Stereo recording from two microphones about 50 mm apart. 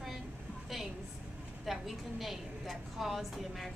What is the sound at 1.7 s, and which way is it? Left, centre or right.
A woman's voice, centre.